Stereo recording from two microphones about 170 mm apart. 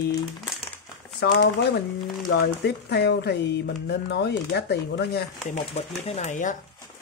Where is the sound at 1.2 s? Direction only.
70° left (ahead or behind).